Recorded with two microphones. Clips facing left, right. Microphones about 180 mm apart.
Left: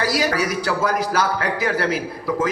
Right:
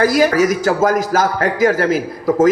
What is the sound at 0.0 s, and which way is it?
A man's voice, 50° right (ahead or behind).